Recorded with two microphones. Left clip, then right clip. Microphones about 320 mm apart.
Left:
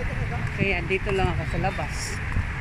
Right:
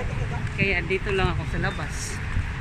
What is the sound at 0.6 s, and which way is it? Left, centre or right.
Speech, centre.